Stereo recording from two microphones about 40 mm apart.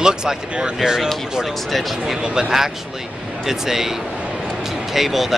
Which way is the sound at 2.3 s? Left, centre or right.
Centre.